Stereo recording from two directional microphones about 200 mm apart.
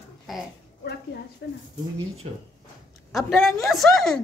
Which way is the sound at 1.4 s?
55° left (ahead or behind).